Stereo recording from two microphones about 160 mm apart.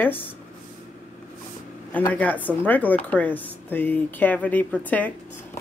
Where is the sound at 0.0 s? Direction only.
10° left (ahead or behind).